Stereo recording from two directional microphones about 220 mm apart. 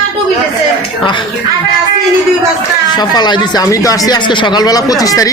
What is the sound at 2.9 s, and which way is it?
Speech, 20° left (ahead or behind).